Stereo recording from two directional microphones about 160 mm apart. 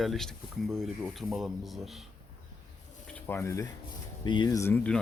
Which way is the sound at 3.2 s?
15° left (ahead or behind).